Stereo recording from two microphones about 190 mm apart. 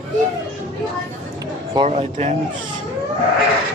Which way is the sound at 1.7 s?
35° right (ahead or behind).